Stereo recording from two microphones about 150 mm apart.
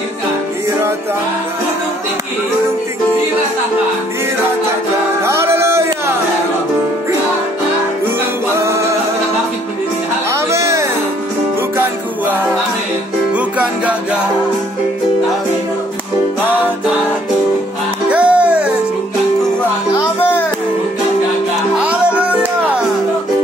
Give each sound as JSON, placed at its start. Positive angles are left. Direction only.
{"t": 5.2, "sound": "a sound", "side_deg": -15}
{"t": 8.5, "sound": "music", "side_deg": -20}
{"t": 10.3, "sound": "music", "side_deg": -20}
{"t": 18.1, "sound": "music", "side_deg": -10}
{"t": 20.2, "sound": "music", "side_deg": 15}
{"t": 21.7, "sound": "music", "side_deg": -10}